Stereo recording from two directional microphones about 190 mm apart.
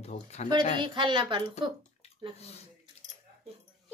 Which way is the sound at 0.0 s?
35° left (ahead or behind).